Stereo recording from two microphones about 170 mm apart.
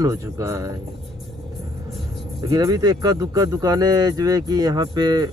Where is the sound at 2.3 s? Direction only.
20° right (ahead or behind).